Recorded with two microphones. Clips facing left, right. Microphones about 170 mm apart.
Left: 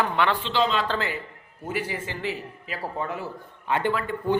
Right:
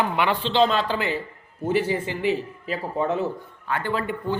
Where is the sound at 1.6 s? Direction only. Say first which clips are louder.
Right 7 dB; 30° right (ahead or behind).